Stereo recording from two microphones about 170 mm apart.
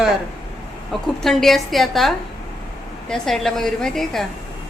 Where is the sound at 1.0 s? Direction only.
Centre (ahead or behind).